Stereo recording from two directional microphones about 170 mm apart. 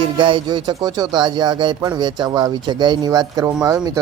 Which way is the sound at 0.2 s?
30° right (ahead or behind).